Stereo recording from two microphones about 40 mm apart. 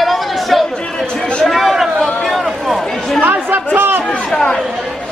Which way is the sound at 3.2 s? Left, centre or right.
Right.